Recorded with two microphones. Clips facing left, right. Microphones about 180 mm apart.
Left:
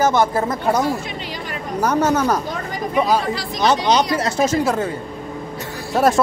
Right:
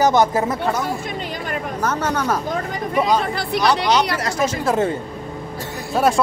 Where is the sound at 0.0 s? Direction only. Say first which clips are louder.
Right 1 dB; 20° right (ahead or behind).